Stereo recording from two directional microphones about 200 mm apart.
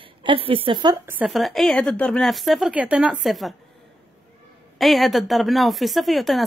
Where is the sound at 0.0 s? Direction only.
25° right (ahead or behind).